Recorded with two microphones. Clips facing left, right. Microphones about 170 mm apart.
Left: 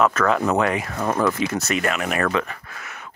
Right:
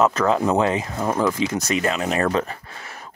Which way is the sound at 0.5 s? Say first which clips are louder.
Right 1 dB; 25° right (ahead or behind).